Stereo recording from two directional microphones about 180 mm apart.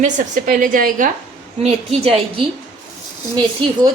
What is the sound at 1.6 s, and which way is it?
Speech, 35° right (ahead or behind).